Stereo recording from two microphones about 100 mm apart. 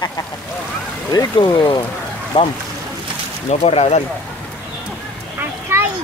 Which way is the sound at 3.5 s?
90° left.